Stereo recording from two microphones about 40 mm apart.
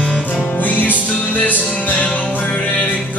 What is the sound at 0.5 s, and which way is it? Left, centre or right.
Music, left.